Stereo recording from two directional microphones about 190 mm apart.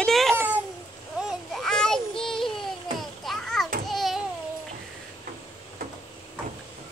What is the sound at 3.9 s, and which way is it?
Babbling, centre (ahead or behind).